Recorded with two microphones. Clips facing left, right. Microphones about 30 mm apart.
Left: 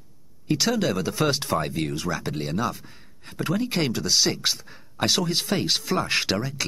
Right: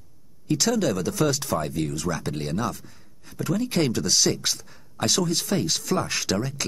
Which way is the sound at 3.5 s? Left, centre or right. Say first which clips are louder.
Right 1 dB; centre.